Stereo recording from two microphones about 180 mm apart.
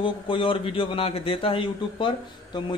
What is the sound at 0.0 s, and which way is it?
A man's voice, 30° left (ahead or behind).